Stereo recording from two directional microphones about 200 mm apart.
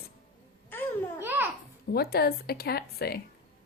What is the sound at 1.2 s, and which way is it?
Babbling, 10° right (ahead or behind).